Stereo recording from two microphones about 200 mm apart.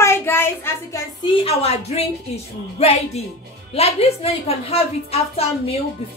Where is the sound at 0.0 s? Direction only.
15° left (ahead or behind).